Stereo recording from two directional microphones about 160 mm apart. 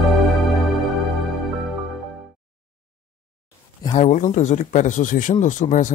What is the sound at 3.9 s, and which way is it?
Speech, 50° left (ahead or behind).